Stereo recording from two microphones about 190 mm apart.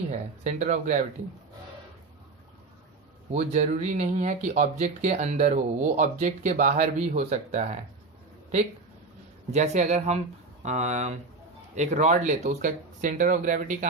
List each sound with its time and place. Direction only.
0.1 s speech: 40° right (ahead or behind)
3.3 s speech: 35° right (ahead or behind)
9.5 s speech: 35° right (ahead or behind)